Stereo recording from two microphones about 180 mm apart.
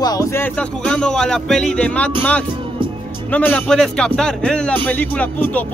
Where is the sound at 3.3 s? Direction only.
5° left (ahead or behind).